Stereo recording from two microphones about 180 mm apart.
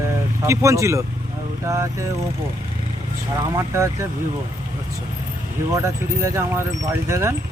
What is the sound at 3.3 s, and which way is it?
Speech, 20° right (ahead or behind).